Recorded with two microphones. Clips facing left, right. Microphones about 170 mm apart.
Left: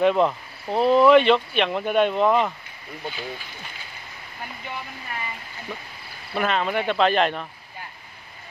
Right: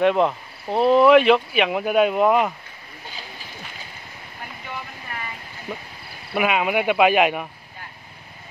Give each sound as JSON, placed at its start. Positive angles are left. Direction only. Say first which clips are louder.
{"t": 0.0, "sound": "speech", "louder": "right 1 dB", "side_deg": 0}
{"t": 6.3, "sound": "speech", "louder": "right 3 dB", "side_deg": -10}